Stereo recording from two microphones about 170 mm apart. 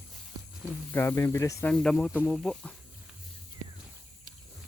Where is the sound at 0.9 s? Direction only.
10° left (ahead or behind).